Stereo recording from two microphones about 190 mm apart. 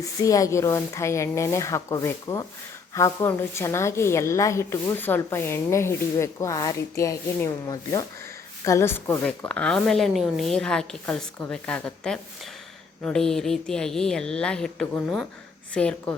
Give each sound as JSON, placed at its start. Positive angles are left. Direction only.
{"t": 0.0, "sound": "a woman's voice", "side_deg": 15}